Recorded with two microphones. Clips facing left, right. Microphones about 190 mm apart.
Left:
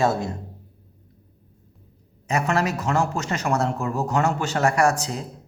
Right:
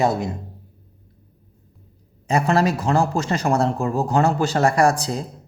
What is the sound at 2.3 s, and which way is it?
Speech, 35° right (ahead or behind).